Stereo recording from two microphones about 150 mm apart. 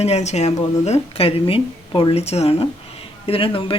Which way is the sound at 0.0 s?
45° left (ahead or behind).